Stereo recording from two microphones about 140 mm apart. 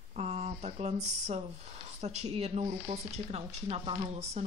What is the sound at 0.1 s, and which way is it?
Speech, 50° right (ahead or behind).